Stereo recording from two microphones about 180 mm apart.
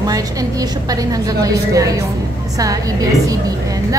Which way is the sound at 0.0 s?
20° right (ahead or behind).